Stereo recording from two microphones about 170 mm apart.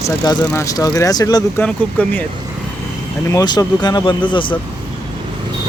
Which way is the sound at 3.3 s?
20° left (ahead or behind).